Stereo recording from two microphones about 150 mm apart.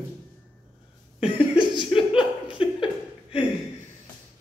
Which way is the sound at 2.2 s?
35° left (ahead or behind).